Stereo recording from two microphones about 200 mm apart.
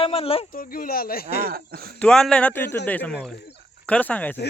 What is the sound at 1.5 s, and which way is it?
Speech, 50° right (ahead or behind).